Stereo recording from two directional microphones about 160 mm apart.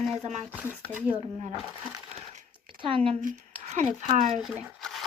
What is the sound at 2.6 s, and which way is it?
Speech, 35° right (ahead or behind).